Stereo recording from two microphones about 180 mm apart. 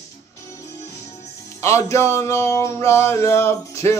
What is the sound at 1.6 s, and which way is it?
Speech, 15° left (ahead or behind).